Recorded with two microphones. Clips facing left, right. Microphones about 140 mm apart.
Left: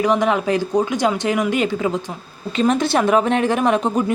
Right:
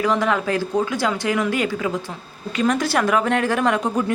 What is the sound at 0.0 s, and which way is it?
A woman's voice, 20° left (ahead or behind).